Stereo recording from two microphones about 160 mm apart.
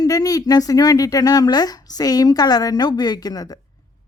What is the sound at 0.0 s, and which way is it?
Speech, 20° left (ahead or behind).